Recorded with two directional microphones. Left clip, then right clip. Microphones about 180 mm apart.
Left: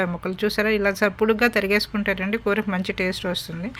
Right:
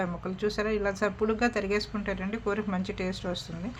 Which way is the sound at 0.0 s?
25° left (ahead or behind).